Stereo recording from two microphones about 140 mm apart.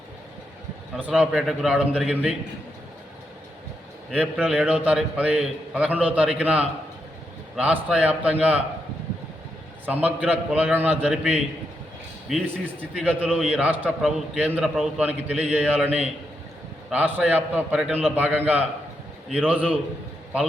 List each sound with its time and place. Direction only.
1.0 s a man's voice: 10° right (ahead or behind)
4.1 s a man's voice: 5° right (ahead or behind)
9.8 s a man's voice: 10° right (ahead or behind)
13.2 s a man's voice: 5° left (ahead or behind)
13.5 s a man's voice: 10° right (ahead or behind)
14.6 s a man's voice: centre (ahead or behind)
15.0 s a man's voice: 10° right (ahead or behind)